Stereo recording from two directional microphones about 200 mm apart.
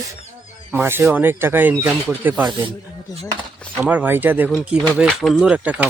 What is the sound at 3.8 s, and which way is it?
Speech, 5° right (ahead or behind).